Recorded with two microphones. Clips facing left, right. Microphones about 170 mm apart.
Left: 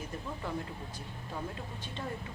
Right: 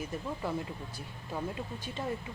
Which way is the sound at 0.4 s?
5° right (ahead or behind).